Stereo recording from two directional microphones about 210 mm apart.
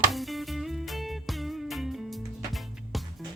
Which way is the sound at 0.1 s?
Centre (ahead or behind).